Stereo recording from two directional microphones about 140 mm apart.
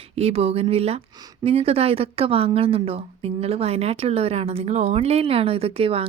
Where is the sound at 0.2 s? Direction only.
45° right (ahead or behind).